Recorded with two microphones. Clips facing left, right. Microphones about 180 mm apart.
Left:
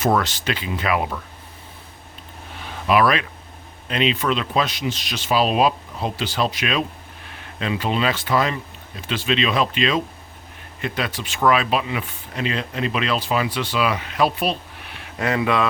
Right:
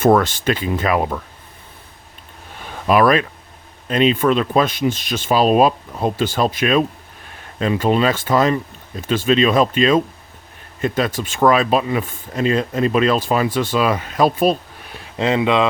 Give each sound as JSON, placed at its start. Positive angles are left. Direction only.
{"t": 0.0, "sound": "speech", "side_deg": -50}
{"t": 2.8, "sound": "speech", "side_deg": -45}
{"t": 15.2, "sound": "speech", "side_deg": -20}